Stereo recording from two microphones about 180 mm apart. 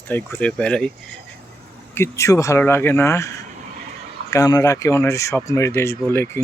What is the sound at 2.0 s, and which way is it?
Speech, 15° left (ahead or behind).